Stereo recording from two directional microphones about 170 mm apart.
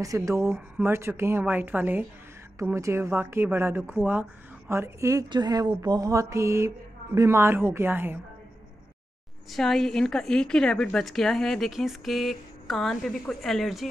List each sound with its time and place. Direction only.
0.0 s a woman's voice: 20° right (ahead or behind)
9.5 s a woman's voice: centre (ahead or behind)